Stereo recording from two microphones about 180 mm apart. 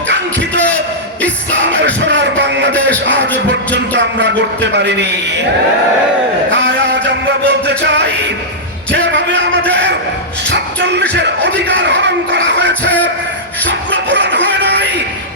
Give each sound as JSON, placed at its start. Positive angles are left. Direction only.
{"t": 0.1, "sound": "music", "side_deg": -75}
{"t": 2.0, "sound": "a sound", "side_deg": -75}
{"t": 3.9, "sound": "a man's voice", "side_deg": -75}
{"t": 6.5, "sound": "music", "side_deg": -80}
{"t": 10.5, "sound": "music", "side_deg": -75}